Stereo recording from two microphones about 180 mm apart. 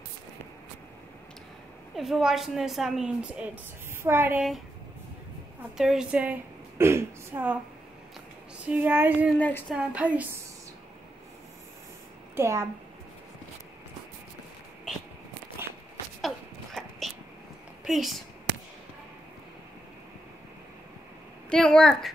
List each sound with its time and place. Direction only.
2.0 s a woman's voice: centre (ahead or behind)
5.8 s a woman's voice: 5° right (ahead or behind)
6.8 s a sound: 15° right (ahead or behind)
8.6 s speech: 10° right (ahead or behind)
9.4 s a sound: 10° left (ahead or behind)
9.8 s speech: 5° right (ahead or behind)
12.4 s speech: 15° right (ahead or behind)
15.6 s walk: 15° right (ahead or behind)
16.2 s a sound: centre (ahead or behind)
17.8 s a woman's voice: centre (ahead or behind)
21.5 s a woman's voice: 5° left (ahead or behind)